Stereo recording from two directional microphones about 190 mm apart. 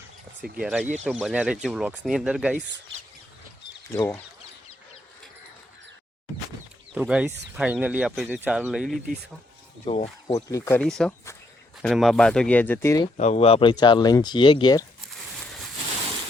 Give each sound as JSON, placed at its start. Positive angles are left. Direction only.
{"t": 0.6, "sound": "speech", "side_deg": -5}
{"t": 3.9, "sound": "speech", "side_deg": 15}
{"t": 6.9, "sound": "speech", "side_deg": -5}
{"t": 9.8, "sound": "speech", "side_deg": 35}
{"t": 10.3, "sound": "speech", "side_deg": 15}
{"t": 10.8, "sound": "speech", "side_deg": 0}
{"t": 13.1, "sound": "speech", "side_deg": 35}